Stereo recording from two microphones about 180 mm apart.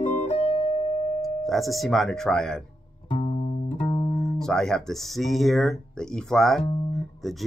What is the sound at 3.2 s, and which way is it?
Music, 40° left (ahead or behind).